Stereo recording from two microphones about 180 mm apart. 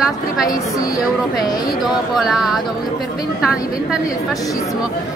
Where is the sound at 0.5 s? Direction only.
20° left (ahead or behind).